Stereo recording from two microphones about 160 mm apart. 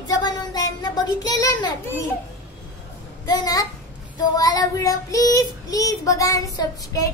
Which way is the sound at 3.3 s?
25° left (ahead or behind).